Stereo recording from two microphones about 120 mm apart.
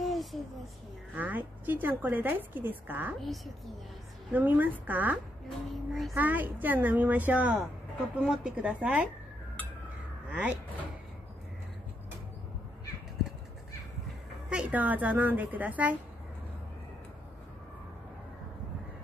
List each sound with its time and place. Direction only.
0.0 s a sound: centre (ahead or behind)
1.1 s a woman's voice: 15° right (ahead or behind)
3.2 s a woman's voice: centre (ahead or behind)
4.3 s a woman's voice: 15° right (ahead or behind)
5.7 s a woman's voice: centre (ahead or behind)
6.1 s a woman's voice: 15° right (ahead or behind)
10.3 s a woman's voice: 10° right (ahead or behind)
14.5 s a woman's voice: 10° right (ahead or behind)